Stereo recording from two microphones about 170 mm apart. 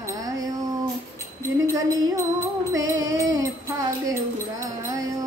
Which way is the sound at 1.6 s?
20° right (ahead or behind).